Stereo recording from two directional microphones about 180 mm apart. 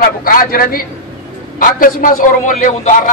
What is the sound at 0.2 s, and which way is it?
A man's voice, 50° left (ahead or behind).